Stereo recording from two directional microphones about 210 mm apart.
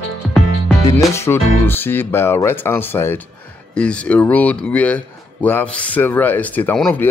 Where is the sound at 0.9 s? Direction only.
10° left (ahead or behind).